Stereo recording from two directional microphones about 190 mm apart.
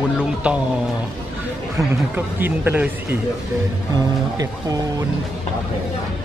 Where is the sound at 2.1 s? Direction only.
10° right (ahead or behind).